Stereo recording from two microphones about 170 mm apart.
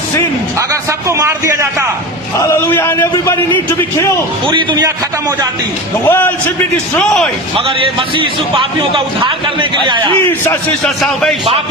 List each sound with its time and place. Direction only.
0.9 s a sound: 15° right (ahead or behind)
2.5 s a man's voice: 15° left (ahead or behind)
4.4 s a man's voice: 25° right (ahead or behind)
6.1 s a man's voice: 10° left (ahead or behind)
7.5 s a man's voice: 30° right (ahead or behind)
10.2 s a man's voice: 10° left (ahead or behind)